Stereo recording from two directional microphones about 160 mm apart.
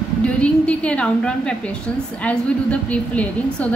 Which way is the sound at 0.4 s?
5° left (ahead or behind).